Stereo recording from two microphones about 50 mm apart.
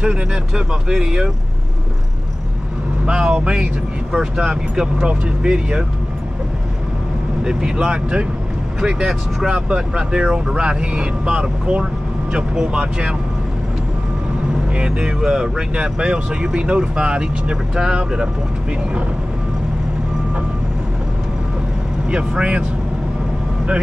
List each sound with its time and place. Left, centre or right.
0.0 s speech: centre
3.1 s speech: right
7.4 s speech: centre
14.7 s speech: centre
22.1 s speech: right